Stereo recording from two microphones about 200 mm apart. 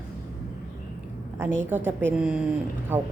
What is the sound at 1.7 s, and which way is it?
Speech, 10° right (ahead or behind).